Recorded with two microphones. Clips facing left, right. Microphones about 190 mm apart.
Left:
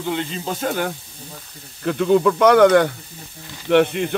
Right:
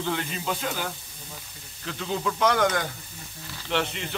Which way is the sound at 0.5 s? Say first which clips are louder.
Left 7 dB; 50° left (ahead or behind).